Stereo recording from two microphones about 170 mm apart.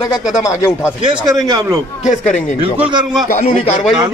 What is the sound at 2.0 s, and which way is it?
Speech, 45° left (ahead or behind).